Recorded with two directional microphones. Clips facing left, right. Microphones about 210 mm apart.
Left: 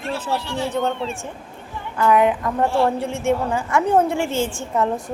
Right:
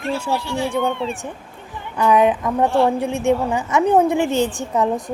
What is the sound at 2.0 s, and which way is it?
A woman's voice, 20° right (ahead or behind).